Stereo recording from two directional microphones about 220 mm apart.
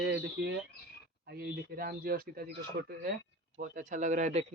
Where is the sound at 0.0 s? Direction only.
50° right (ahead or behind).